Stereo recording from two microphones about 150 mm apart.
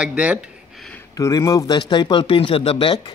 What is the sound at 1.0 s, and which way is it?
A man's voice, 20° left (ahead or behind).